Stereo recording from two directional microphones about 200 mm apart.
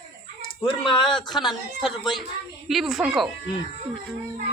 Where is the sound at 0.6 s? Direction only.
25° left (ahead or behind).